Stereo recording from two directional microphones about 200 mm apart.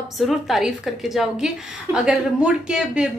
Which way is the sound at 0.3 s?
Centre (ahead or behind).